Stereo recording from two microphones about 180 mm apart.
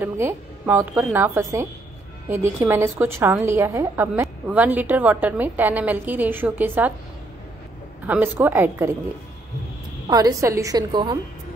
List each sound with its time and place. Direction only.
0.0 s a woman's voice: 10° right (ahead or behind)
8.1 s a woman's voice: 10° right (ahead or behind)
10.0 s a woman's voice: 20° right (ahead or behind)